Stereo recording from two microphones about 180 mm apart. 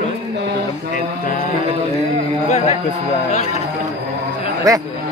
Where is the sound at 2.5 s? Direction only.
40° left (ahead or behind).